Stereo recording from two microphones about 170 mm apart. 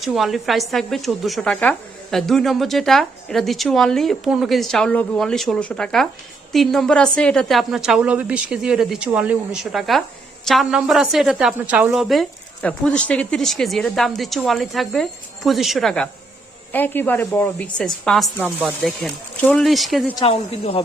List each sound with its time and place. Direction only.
0.0 s a woman's voice: centre (ahead or behind)
20.2 s speech: 35° left (ahead or behind)